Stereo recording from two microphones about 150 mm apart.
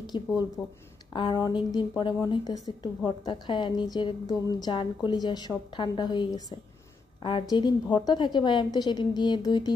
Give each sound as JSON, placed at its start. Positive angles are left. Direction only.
{"t": 0.1, "sound": "a woman's voice", "side_deg": 35}
{"t": 0.6, "sound": "speech", "side_deg": 0}
{"t": 1.1, "sound": "a woman's voice", "side_deg": 30}